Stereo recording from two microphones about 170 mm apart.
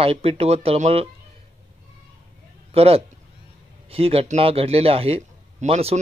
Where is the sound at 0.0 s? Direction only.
35° right (ahead or behind).